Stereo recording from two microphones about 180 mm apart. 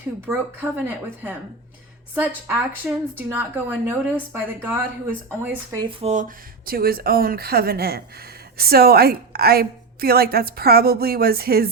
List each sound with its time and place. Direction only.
0.3 s a woman's voice: 10° right (ahead or behind)
6.0 s speech: 40° right (ahead or behind); by 11.7 s 55° right (ahead or behind)